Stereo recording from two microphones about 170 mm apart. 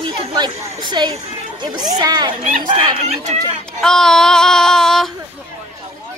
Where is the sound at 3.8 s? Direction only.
5° left (ahead or behind).